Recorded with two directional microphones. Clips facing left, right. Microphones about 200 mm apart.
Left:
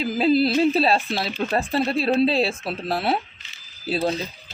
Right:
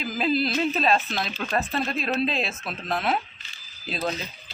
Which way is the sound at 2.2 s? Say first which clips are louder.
Left 7 dB; 35° left (ahead or behind).